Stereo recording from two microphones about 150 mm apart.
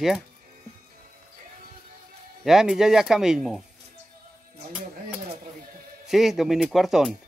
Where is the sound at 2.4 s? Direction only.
5° right (ahead or behind).